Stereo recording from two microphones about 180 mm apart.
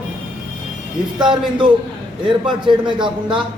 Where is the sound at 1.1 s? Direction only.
25° right (ahead or behind).